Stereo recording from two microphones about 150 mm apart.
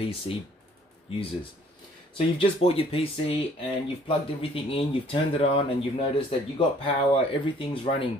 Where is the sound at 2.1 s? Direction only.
40° left (ahead or behind).